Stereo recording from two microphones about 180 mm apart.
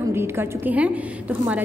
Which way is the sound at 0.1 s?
15° right (ahead or behind).